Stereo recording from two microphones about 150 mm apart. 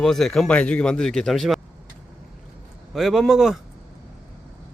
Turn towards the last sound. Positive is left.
turn(degrees=0)  # may be behind; listen again after turning